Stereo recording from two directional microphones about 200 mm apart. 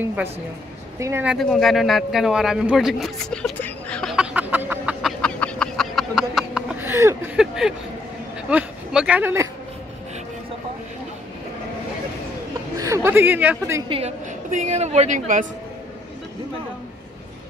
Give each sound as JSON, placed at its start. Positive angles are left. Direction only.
{"t": 0.0, "sound": "a woman's voice", "side_deg": -10}
{"t": 5.2, "sound": "a sound", "side_deg": 5}
{"t": 8.4, "sound": "speech", "side_deg": -5}
{"t": 12.7, "sound": "a woman's voice", "side_deg": -15}
{"t": 13.8, "sound": "a woman's voice", "side_deg": -30}